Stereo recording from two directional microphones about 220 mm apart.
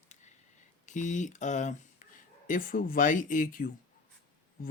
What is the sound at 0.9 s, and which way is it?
Speech, 35° left (ahead or behind).